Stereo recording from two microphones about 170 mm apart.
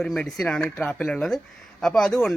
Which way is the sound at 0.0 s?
5° left (ahead or behind).